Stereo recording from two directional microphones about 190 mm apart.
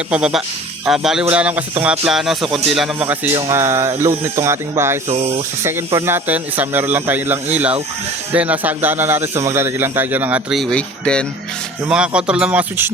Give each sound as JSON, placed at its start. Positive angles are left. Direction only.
{"t": 0.1, "sound": "speech", "side_deg": -5}
{"t": 5.0, "sound": "speech", "side_deg": -35}
{"t": 5.6, "sound": "speech", "side_deg": -10}